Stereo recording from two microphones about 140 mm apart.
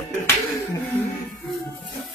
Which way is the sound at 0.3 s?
20° left (ahead or behind).